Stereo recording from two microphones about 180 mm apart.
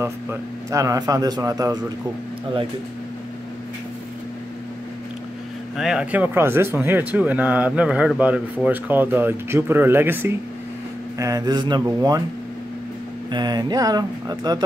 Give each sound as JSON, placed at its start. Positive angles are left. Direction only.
{"t": 0.0, "sound": "a man's voice", "side_deg": -15}
{"t": 5.8, "sound": "a man's voice", "side_deg": -5}
{"t": 13.3, "sound": "a man's voice", "side_deg": -25}